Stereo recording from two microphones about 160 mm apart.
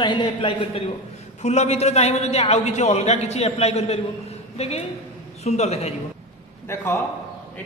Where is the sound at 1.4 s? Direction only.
45° left (ahead or behind).